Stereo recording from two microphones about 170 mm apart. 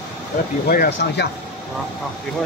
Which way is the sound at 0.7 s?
70° left (ahead or behind).